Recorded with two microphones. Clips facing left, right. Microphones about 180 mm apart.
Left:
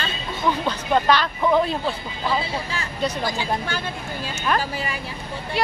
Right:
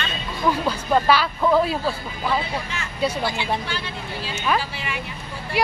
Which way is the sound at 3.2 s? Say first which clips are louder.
Even; 40° left (ahead or behind).